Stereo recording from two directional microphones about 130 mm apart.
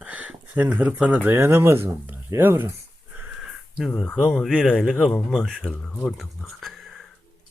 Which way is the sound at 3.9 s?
10° left (ahead or behind).